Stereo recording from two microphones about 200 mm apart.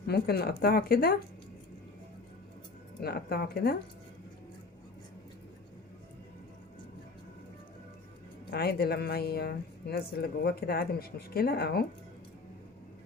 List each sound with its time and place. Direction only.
0.1 s a woman's voice: 50° left (ahead or behind)
3.0 s a woman's voice: 50° left (ahead or behind)
8.4 s a woman's voice: 50° left (ahead or behind)